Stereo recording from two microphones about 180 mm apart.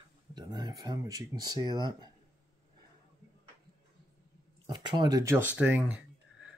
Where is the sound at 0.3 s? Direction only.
25° right (ahead or behind).